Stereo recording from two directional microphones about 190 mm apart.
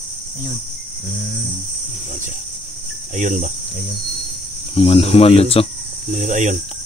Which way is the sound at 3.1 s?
40° right (ahead or behind).